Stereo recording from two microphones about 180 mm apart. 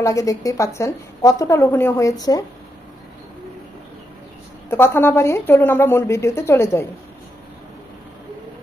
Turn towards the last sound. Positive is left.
turn(degrees=15)  # may be behind; listen again after turning